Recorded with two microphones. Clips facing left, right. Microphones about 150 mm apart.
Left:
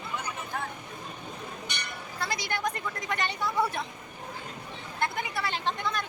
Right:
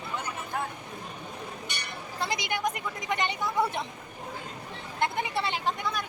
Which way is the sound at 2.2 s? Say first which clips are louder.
Right 2 dB; 20° right (ahead or behind).